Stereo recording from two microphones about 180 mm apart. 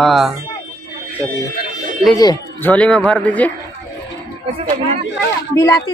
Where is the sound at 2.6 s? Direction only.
5° left (ahead or behind).